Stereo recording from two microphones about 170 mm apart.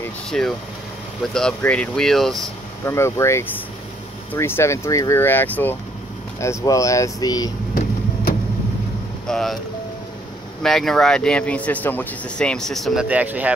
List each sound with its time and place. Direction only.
0.0 s vehicle: 5° left (ahead or behind)
1.2 s speech: 5° left (ahead or behind)
2.8 s speech: 15° left (ahead or behind)
7.7 s a sound: 55° left (ahead or behind)
9.3 s speech: centre (ahead or behind)
10.6 s speech: centre (ahead or behind)